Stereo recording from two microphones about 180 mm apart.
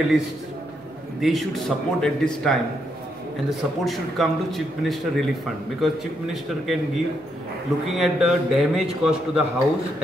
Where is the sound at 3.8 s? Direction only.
Centre (ahead or behind).